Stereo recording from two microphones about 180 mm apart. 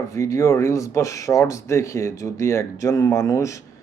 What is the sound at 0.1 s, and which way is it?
Speech, 15° left (ahead or behind).